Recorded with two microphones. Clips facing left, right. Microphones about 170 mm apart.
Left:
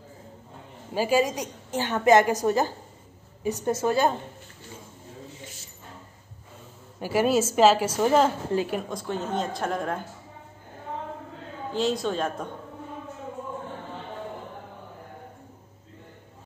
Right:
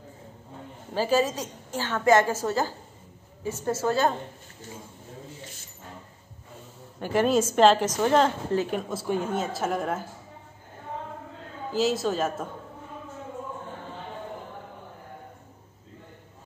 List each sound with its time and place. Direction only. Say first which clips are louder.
0.9 s a woman's voice: left 1 dB; 10° left (ahead or behind)
7.0 s a woman's voice: even; 5° left (ahead or behind)
11.7 s a woman's voice: right 1 dB; 5° right (ahead or behind)